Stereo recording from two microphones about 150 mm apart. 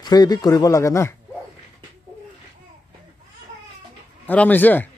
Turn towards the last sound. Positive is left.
turn(degrees=10)  # may be behind; listen again after turning